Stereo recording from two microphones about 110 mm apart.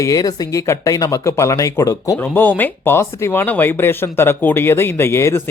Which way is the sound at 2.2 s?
15° left (ahead or behind).